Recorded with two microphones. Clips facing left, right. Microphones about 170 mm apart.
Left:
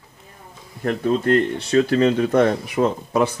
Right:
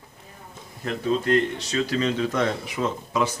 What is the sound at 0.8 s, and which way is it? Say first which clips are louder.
Speech: left 5 dB; 50° left (ahead or behind).